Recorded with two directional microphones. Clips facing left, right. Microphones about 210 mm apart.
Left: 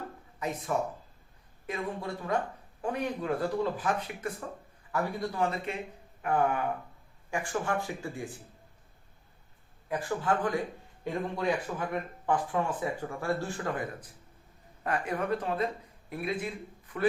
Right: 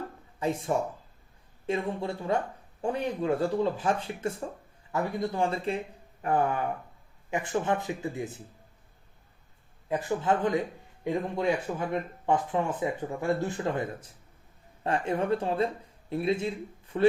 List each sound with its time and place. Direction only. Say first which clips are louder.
0.3 s speech: right 3 dB; 30° right (ahead or behind)
7.3 s speech: right 4 dB; 20° right (ahead or behind)
9.9 s a man's voice: right 3 dB; 20° right (ahead or behind)